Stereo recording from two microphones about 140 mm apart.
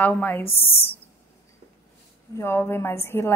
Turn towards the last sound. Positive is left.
turn(degrees=15)  # may be behind; listen again after turning